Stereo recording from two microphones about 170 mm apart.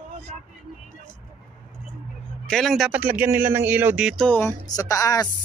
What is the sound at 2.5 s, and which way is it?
Speech, centre (ahead or behind).